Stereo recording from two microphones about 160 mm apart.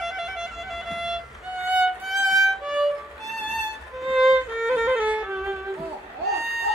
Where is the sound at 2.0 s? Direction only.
Centre (ahead or behind).